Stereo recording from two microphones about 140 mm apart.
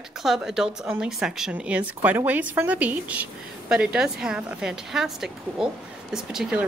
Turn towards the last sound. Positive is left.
turn(degrees=-5)  # may be behind; listen again after turning